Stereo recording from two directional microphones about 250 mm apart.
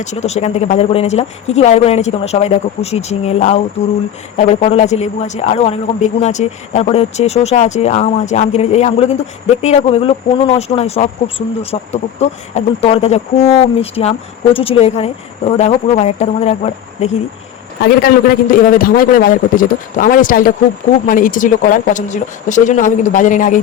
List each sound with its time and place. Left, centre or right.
0.0 s a man's voice: left
17.8 s a man's voice: left